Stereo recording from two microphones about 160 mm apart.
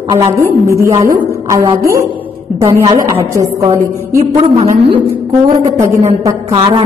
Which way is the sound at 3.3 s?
20° right (ahead or behind).